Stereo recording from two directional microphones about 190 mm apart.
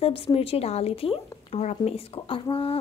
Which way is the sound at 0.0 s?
30° left (ahead or behind).